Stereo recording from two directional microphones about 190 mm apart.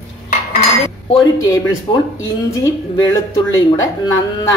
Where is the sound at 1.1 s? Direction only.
20° left (ahead or behind).